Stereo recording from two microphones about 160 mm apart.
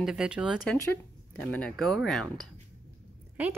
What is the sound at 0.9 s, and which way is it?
Speech, 10° left (ahead or behind).